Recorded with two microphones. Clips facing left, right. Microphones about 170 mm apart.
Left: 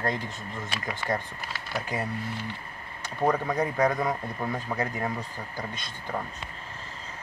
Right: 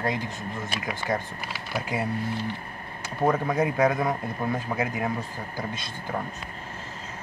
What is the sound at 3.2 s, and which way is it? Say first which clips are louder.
A man's voice: right 2 dB; 5° right (ahead or behind).